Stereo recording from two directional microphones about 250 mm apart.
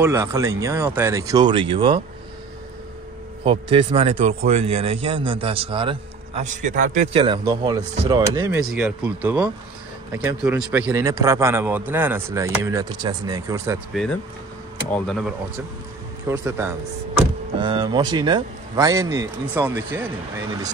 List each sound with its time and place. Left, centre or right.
0.0 s a man's voice: centre
3.4 s a man's voice: right
14.9 s speech: centre
16.3 s a man's voice: centre